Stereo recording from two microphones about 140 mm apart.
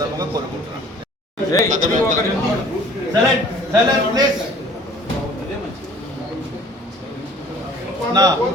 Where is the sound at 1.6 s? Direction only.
65° right (ahead or behind).